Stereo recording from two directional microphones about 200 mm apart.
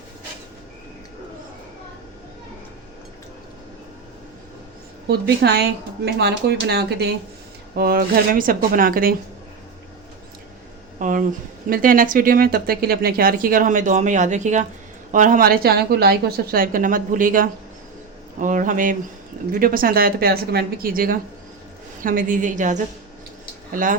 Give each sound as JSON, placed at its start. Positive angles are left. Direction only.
{"t": 5.0, "sound": "speech", "side_deg": -55}
{"t": 11.0, "sound": "a woman's voice", "side_deg": -40}